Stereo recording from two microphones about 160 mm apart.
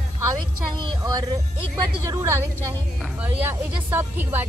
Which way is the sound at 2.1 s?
15° right (ahead or behind).